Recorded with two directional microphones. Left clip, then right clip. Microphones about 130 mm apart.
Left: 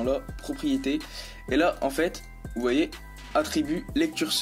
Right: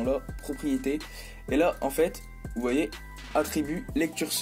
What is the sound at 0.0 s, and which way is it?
Speech, 20° right (ahead or behind).